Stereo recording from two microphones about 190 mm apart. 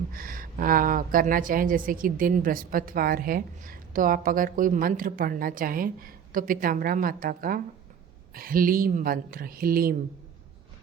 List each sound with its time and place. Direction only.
0.1 s speech: 50° right (ahead or behind)